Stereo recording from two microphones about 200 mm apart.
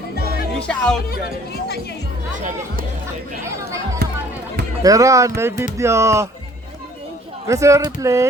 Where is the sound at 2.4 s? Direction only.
40° right (ahead or behind).